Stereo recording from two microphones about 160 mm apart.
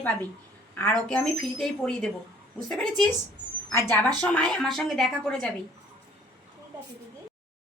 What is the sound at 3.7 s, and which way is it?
A woman's voice, 15° left (ahead or behind).